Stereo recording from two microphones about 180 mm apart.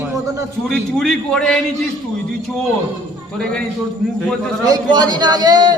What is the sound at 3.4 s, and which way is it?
A woman's voice, 5° left (ahead or behind).